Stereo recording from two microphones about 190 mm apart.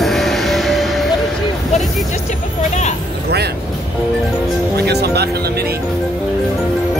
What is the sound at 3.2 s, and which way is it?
Music, 60° right (ahead or behind).